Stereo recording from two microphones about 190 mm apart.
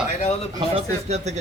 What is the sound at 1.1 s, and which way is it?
Speech, 35° right (ahead or behind).